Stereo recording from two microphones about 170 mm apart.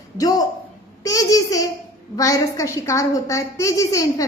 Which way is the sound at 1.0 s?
20° left (ahead or behind).